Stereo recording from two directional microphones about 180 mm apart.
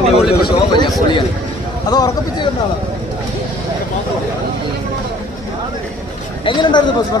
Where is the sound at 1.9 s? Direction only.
20° left (ahead or behind).